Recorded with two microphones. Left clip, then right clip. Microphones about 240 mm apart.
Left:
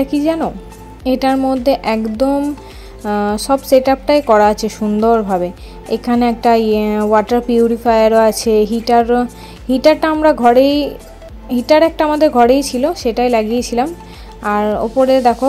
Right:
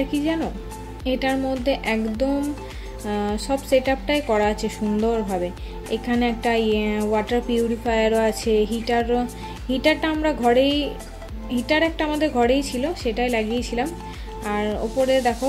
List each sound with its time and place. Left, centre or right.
0.0 s a woman's voice: left